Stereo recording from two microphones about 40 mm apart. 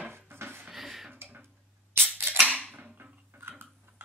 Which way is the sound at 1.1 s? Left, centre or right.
Right.